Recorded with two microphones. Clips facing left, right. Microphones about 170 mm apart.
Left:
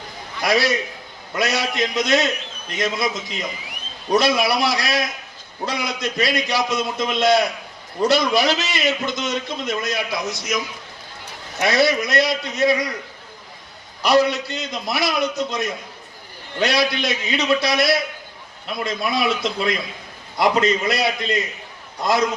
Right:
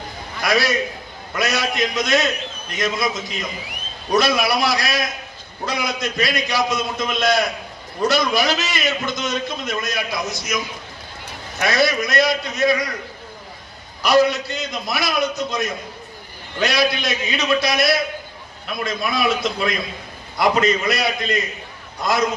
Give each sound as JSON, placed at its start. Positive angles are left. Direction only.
{"t": 0.4, "sound": "a man's voice", "side_deg": 25}
{"t": 11.6, "sound": "a man's voice", "side_deg": 25}
{"t": 14.0, "sound": "a man's voice", "side_deg": 25}